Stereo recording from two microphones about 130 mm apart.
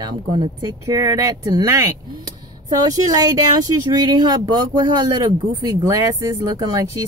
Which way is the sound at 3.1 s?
30° right (ahead or behind).